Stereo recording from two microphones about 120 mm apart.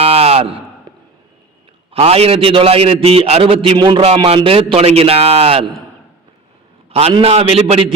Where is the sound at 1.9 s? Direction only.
60° right (ahead or behind).